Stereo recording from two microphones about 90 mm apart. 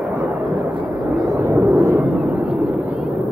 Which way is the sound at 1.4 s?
25° right (ahead or behind).